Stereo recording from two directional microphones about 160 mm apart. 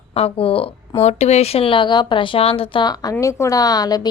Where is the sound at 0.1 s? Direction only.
35° left (ahead or behind).